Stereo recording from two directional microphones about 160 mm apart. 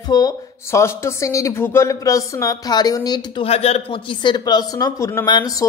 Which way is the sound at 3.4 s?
40° left (ahead or behind).